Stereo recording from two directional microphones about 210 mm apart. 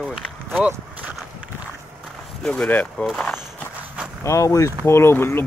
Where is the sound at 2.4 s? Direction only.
5° left (ahead or behind).